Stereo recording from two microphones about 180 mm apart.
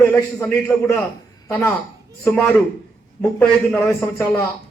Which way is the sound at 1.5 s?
15° left (ahead or behind).